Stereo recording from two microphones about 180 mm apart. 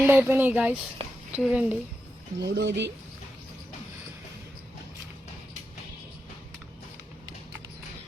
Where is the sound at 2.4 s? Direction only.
70° right (ahead or behind).